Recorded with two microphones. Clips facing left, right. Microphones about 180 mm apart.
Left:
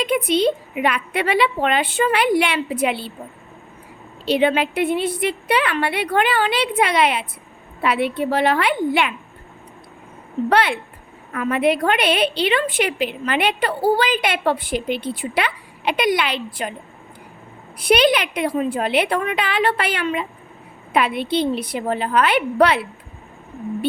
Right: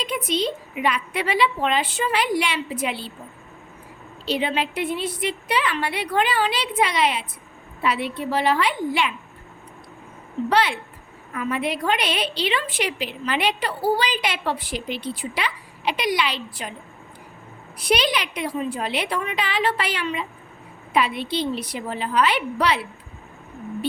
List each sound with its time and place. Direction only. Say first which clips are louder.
0.0 s a woman's voice: left 7 dB; 60° left (ahead or behind)
4.3 s a woman's voice: left 6 dB; 60° left (ahead or behind)
10.5 s a woman's voice: left 2 dB; 55° left (ahead or behind)
17.7 s a woman's voice: left 6 dB; 55° left (ahead or behind)